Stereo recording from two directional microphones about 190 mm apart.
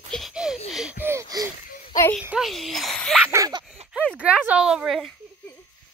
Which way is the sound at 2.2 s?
5° right (ahead or behind).